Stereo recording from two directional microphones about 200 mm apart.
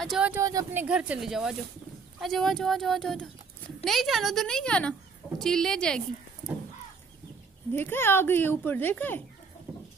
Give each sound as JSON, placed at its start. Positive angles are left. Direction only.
{"t": 0.0, "sound": "speech", "side_deg": 0}
{"t": 0.3, "sound": "speech", "side_deg": -15}
{"t": 0.8, "sound": "a woman's voice", "side_deg": -5}
{"t": 7.7, "sound": "speech", "side_deg": 10}